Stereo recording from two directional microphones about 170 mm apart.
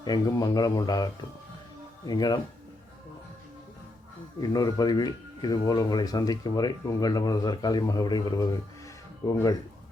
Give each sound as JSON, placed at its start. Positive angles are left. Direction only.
{"t": 0.0, "sound": "speech", "side_deg": 25}
{"t": 2.0, "sound": "speech", "side_deg": 25}
{"t": 4.4, "sound": "speech", "side_deg": 20}